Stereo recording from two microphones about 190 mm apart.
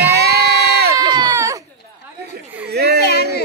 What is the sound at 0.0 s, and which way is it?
Crowd, 60° right (ahead or behind).